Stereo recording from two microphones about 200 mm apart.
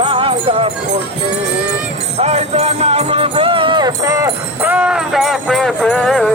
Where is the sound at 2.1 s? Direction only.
35° right (ahead or behind).